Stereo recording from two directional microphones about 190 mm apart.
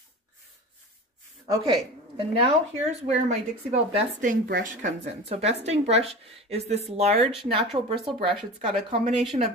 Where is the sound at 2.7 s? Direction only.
35° right (ahead or behind).